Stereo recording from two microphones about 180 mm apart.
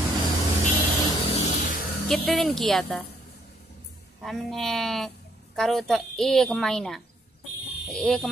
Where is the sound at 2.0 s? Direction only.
Centre (ahead or behind).